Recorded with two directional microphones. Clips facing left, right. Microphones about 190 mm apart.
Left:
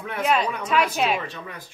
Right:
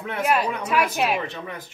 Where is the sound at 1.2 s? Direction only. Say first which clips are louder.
Right 3 dB; 20° right (ahead or behind).